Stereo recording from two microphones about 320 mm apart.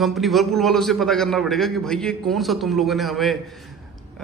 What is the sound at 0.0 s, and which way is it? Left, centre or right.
A man's voice, centre.